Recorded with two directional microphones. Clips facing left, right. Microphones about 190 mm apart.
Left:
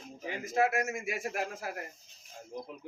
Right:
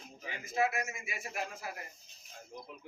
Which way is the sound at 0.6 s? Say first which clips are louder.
Left 4 dB; 45° left (ahead or behind).